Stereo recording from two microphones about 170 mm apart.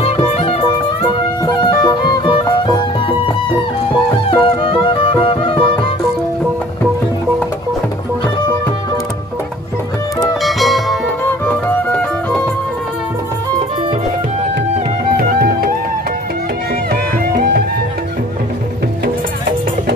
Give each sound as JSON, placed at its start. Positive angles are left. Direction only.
{"t": 0.3, "sound": "music", "side_deg": 40}
{"t": 1.4, "sound": "music", "side_deg": 25}
{"t": 4.3, "sound": "music", "side_deg": 30}
{"t": 10.4, "sound": "music", "side_deg": 0}
{"t": 11.2, "sound": "music", "side_deg": 10}
{"t": 15.1, "sound": "music", "side_deg": -65}
{"t": 16.9, "sound": "music", "side_deg": -65}